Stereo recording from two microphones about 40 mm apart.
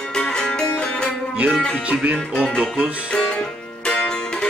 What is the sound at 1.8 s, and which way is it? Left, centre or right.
Music, right.